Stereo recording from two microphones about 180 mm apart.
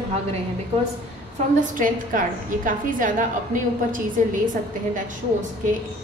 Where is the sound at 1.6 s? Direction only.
50° right (ahead or behind).